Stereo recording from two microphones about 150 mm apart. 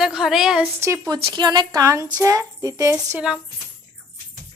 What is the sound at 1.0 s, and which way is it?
Speech, 30° right (ahead or behind).